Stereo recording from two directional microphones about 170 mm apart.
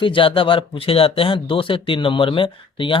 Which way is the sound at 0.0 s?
30° left (ahead or behind).